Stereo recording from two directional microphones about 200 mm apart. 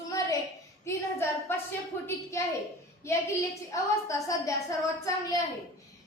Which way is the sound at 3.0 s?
15° left (ahead or behind).